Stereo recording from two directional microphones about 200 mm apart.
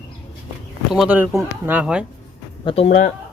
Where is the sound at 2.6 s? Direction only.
30° left (ahead or behind).